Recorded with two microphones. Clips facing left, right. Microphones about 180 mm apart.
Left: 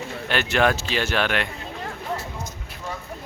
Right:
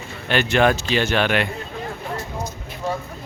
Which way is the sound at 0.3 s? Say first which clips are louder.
Right 3 dB; centre (ahead or behind).